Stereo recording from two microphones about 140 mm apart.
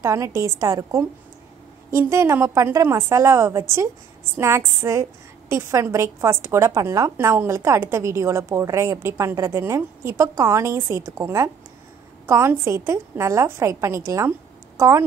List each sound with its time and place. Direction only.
0.0 s a woman's voice: 20° right (ahead or behind)